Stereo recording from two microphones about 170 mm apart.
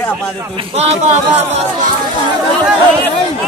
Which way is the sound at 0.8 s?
40° right (ahead or behind).